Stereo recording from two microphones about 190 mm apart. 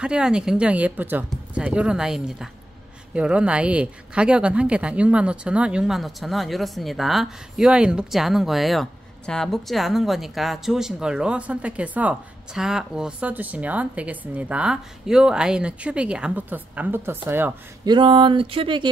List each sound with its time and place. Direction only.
0.0 s speech: 5° right (ahead or behind)
17.8 s speech: 25° right (ahead or behind)